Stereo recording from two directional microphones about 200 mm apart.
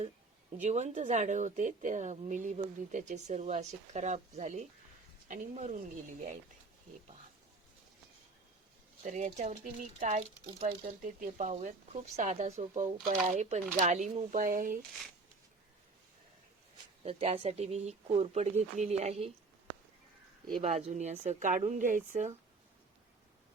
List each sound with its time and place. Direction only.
0.5 s speech: 35° right (ahead or behind)
9.0 s speech: 40° right (ahead or behind)
17.0 s speech: 30° right (ahead or behind)
20.6 s speech: 35° right (ahead or behind)